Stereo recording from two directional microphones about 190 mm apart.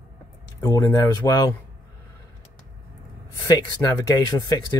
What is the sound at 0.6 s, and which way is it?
Speech, 20° left (ahead or behind).